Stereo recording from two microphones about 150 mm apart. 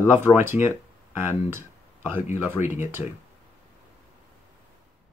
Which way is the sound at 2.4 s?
15° right (ahead or behind).